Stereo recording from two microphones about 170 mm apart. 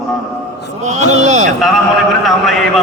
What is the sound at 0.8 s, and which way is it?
Speech, 45° right (ahead or behind).